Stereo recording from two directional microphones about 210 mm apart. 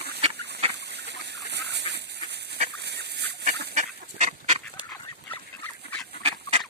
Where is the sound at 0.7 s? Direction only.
55° right (ahead or behind).